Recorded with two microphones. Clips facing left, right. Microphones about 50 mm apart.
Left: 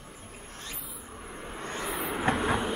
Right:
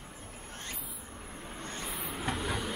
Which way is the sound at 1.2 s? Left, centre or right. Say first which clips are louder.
Left 5 dB; centre.